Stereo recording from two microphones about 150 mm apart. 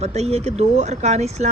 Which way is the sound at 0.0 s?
45° right (ahead or behind).